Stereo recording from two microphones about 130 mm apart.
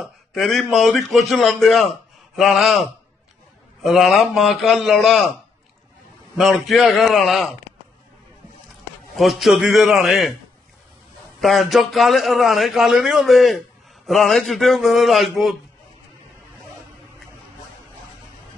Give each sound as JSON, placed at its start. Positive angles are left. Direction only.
{"t": 0.0, "sound": "a man's voice", "side_deg": 0}
{"t": 6.3, "sound": "a man's voice", "side_deg": 0}
{"t": 9.1, "sound": "a man's voice", "side_deg": 0}
{"t": 11.4, "sound": "a man's voice", "side_deg": 0}